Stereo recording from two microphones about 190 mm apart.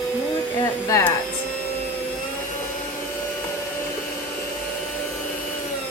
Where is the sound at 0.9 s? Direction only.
15° left (ahead or behind).